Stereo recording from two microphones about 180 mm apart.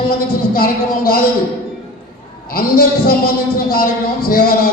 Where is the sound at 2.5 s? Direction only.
55° left (ahead or behind).